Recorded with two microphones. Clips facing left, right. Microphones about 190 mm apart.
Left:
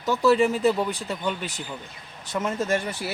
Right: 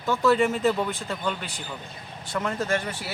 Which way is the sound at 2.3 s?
20° left (ahead or behind).